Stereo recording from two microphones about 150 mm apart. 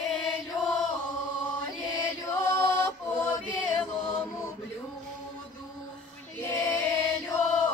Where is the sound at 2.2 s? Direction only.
15° left (ahead or behind).